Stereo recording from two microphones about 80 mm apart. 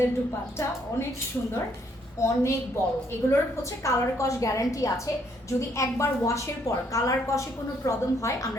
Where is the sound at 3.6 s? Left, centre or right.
Left.